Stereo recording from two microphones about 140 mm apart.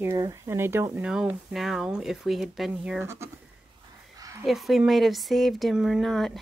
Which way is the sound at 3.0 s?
20° right (ahead or behind).